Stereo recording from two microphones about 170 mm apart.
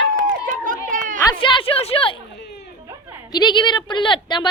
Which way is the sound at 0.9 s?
50° right (ahead or behind).